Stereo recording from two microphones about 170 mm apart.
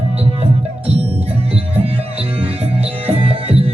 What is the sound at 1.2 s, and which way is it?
Music, 35° right (ahead or behind).